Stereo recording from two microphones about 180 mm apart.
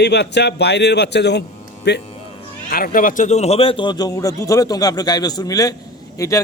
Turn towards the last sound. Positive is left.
turn(degrees=20)  # may be behind; listen again after turning